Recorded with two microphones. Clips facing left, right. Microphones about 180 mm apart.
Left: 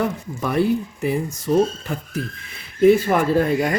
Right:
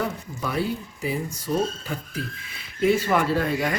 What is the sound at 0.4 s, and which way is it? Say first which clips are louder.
Speech: left 7 dB; 55° left (ahead or behind).